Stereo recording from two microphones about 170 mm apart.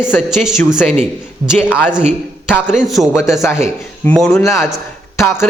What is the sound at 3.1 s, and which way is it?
Speech, 15° left (ahead or behind).